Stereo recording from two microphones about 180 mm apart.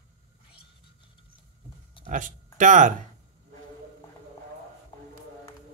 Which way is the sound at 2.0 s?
45° right (ahead or behind).